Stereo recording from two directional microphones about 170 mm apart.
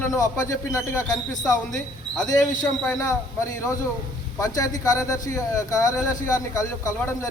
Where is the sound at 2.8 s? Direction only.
15° left (ahead or behind).